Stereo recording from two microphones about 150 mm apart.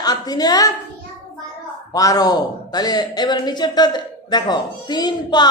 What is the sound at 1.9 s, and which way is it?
Speech, 25° left (ahead or behind).